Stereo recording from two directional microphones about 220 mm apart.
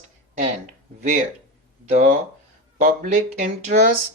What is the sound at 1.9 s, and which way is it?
Speech, 35° right (ahead or behind).